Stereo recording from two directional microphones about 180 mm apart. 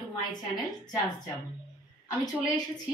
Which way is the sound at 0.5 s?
25° left (ahead or behind).